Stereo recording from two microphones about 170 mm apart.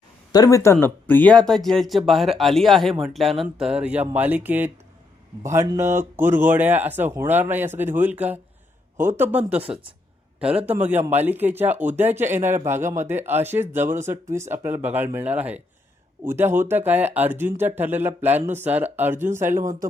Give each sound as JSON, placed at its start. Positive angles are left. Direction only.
{"t": 0.3, "sound": "speech", "side_deg": 20}
{"t": 9.6, "sound": "speech", "side_deg": -30}
{"t": 10.7, "sound": "speech", "side_deg": -10}